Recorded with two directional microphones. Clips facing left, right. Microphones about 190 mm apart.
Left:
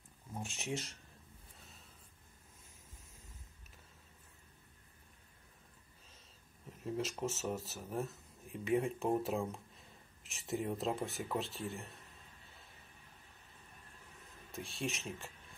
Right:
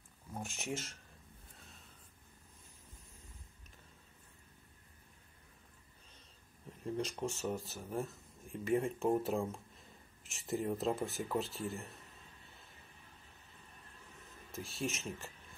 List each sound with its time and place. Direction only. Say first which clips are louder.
0.4 s speech: even; centre (ahead or behind)
6.8 s speech: even; centre (ahead or behind)
14.5 s speech: right 1 dB; centre (ahead or behind)